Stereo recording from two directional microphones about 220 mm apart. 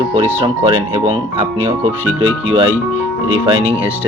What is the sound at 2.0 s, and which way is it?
Speech, 65° right (ahead or behind).